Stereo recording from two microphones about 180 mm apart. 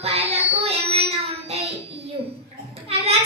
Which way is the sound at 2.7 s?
35° right (ahead or behind).